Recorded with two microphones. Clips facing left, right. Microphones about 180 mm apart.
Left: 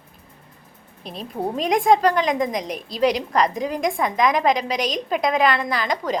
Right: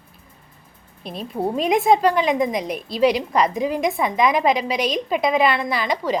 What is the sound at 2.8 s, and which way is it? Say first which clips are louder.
Speech: right 4 dB; 40° left (ahead or behind).